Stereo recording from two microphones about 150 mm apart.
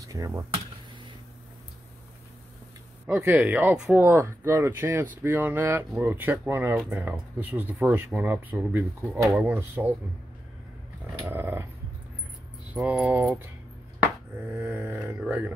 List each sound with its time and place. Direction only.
0.0 s speech: 20° right (ahead or behind)
3.1 s speech: 10° right (ahead or behind)
11.2 s speech: 15° right (ahead or behind)
12.7 s speech: 10° right (ahead or behind)